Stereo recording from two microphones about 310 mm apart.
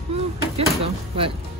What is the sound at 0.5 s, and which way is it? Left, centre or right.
Speech, centre.